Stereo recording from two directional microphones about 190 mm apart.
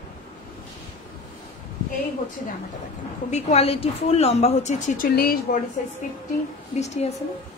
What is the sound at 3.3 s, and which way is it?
A woman's voice, 35° left (ahead or behind).